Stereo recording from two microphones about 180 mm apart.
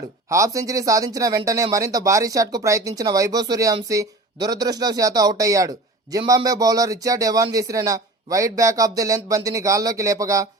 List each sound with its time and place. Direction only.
0.3 s speech: 15° right (ahead or behind)